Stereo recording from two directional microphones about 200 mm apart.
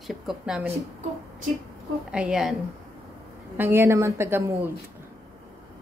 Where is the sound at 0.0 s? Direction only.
Centre (ahead or behind).